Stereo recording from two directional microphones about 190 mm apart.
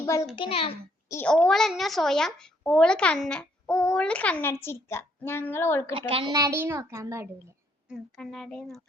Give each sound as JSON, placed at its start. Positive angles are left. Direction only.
{"t": 0.3, "sound": "a child's voice", "side_deg": 30}
{"t": 1.0, "sound": "a child's voice", "side_deg": 15}
{"t": 1.3, "sound": "speech", "side_deg": 5}
{"t": 5.9, "sound": "a woman's voice", "side_deg": -30}
{"t": 7.9, "sound": "speech", "side_deg": 5}